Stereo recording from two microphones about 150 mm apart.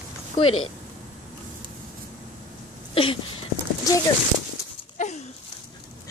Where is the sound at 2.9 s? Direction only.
35° left (ahead or behind).